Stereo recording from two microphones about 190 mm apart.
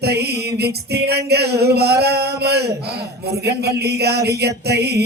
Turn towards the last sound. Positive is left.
turn(degrees=-60)  # may be behind; listen again after turning